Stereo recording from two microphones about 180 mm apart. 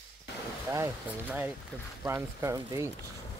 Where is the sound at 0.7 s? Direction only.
15° right (ahead or behind).